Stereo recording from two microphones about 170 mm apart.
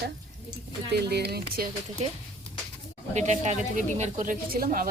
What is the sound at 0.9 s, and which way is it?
Speech, 70° right (ahead or behind).